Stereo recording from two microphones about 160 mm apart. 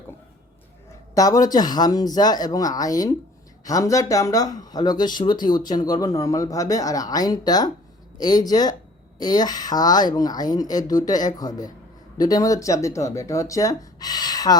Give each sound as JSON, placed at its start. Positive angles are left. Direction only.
{"t": 1.1, "sound": "speech", "side_deg": 20}